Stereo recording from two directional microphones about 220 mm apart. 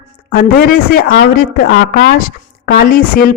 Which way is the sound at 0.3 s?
40° left (ahead or behind).